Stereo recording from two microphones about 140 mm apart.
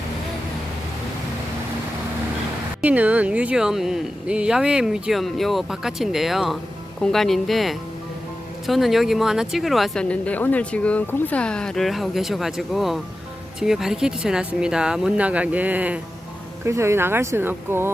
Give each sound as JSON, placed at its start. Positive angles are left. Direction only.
{"t": 2.8, "sound": "speech", "side_deg": -10}